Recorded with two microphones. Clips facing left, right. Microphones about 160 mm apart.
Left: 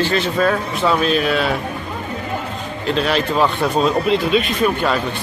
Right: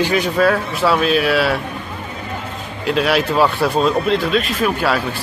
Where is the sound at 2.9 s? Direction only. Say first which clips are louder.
Right 2 dB; 5° right (ahead or behind).